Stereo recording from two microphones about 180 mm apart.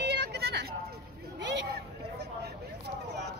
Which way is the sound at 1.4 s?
70° right (ahead or behind).